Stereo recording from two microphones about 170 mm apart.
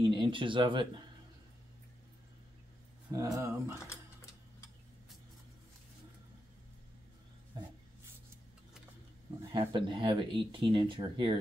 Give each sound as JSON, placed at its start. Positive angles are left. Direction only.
{"t": 0.0, "sound": "speech", "side_deg": -30}
{"t": 3.1, "sound": "speech", "side_deg": -20}
{"t": 7.5, "sound": "dog", "side_deg": -25}
{"t": 9.6, "sound": "speech", "side_deg": -30}